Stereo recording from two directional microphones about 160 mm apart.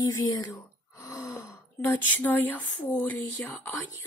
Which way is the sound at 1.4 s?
15° left (ahead or behind).